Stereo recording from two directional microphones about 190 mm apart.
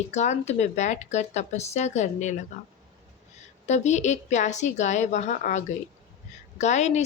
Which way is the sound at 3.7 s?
35° left (ahead or behind).